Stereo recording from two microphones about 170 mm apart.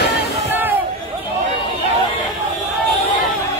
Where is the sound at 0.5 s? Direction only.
10° right (ahead or behind).